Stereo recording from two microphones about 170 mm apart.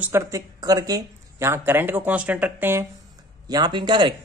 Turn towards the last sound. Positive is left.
turn(degrees=-25)  # may be behind; listen again after turning